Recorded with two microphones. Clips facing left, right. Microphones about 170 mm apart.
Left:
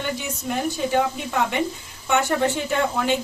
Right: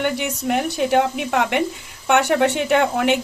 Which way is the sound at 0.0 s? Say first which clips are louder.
Right 6 dB; 65° right (ahead or behind).